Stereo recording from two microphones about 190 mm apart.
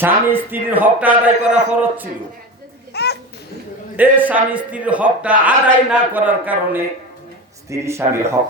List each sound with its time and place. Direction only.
0.0 s a man's voice: 10° right (ahead or behind)
2.9 s babbling: 60° left (ahead or behind)
3.9 s a man's voice: 10° right (ahead or behind)